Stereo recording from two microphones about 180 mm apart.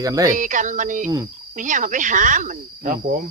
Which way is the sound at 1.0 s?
20° right (ahead or behind).